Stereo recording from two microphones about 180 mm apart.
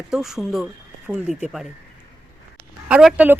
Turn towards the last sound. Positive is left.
turn(degrees=-10)  # may be behind; listen again after turning